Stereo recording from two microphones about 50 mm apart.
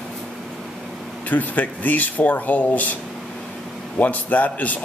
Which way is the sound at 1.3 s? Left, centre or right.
Left.